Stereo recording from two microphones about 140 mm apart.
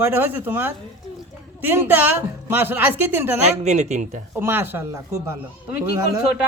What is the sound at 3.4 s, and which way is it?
Speech, 55° right (ahead or behind).